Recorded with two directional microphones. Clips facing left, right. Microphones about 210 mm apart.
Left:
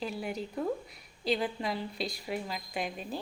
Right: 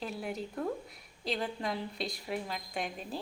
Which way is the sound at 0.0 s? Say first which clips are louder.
Left 2 dB; centre (ahead or behind).